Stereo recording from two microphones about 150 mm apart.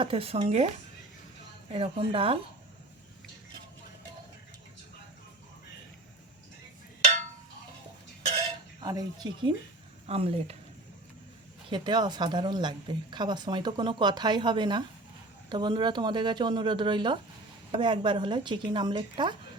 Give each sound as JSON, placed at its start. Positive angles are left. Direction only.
{"t": 0.0, "sound": "speech", "side_deg": -40}
{"t": 1.7, "sound": "speech", "side_deg": -40}
{"t": 8.8, "sound": "a woman's voice", "side_deg": -25}
{"t": 10.1, "sound": "speech", "side_deg": -40}
{"t": 11.7, "sound": "a woman's voice", "side_deg": -30}